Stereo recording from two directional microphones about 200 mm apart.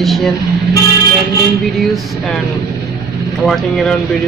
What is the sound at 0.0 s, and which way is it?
Speech, centre (ahead or behind).